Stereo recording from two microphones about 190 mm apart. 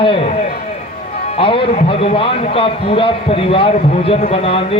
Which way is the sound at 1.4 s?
30° left (ahead or behind).